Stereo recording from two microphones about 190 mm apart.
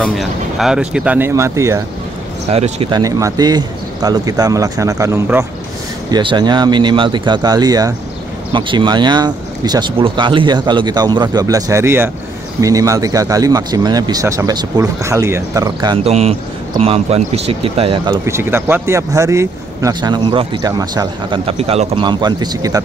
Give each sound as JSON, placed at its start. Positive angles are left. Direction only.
{"t": 0.0, "sound": "a man's voice", "side_deg": 0}
{"t": 2.4, "sound": "speech", "side_deg": -35}
{"t": 3.0, "sound": "a man's voice", "side_deg": -15}
{"t": 16.1, "sound": "speech", "side_deg": -35}